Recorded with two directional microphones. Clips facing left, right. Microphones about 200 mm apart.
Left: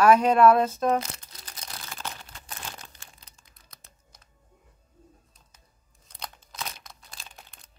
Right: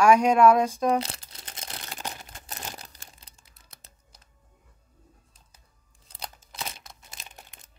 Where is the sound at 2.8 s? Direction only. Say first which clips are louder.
Even; 35° right (ahead or behind).